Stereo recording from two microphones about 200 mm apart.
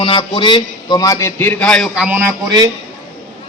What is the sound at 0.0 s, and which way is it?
A man's voice, 25° left (ahead or behind).